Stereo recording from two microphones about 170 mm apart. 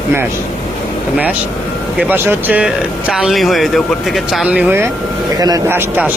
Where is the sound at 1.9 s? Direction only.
10° right (ahead or behind).